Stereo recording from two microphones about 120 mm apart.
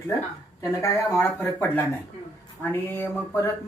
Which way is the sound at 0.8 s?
20° left (ahead or behind).